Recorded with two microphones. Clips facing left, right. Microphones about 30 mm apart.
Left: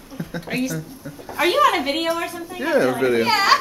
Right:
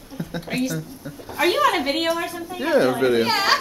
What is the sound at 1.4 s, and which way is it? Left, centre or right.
Speech, centre.